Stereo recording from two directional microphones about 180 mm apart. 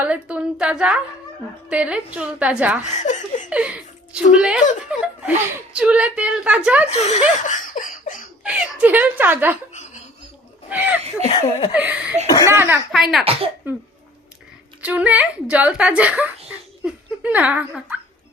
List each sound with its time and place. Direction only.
0.0 s a woman's voice: 5° right (ahead or behind)
2.8 s speech: 40° left (ahead or behind)
3.5 s speech: 5° right (ahead or behind)
6.9 s speech: 40° left (ahead or behind)
8.4 s speech: 5° right (ahead or behind)
10.7 s speech: 10° right (ahead or behind)
11.3 s a sound: 30° left (ahead or behind)
11.7 s speech: 10° right (ahead or behind)
12.9 s speech: centre (ahead or behind)
14.8 s speech: 10° right (ahead or behind)